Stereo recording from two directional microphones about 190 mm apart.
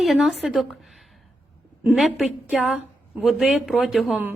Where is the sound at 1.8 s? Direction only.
5° right (ahead or behind).